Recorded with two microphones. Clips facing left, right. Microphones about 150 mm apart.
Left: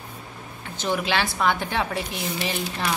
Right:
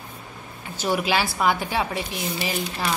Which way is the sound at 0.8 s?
10° right (ahead or behind).